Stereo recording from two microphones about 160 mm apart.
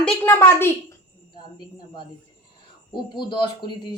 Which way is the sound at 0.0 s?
10° left (ahead or behind).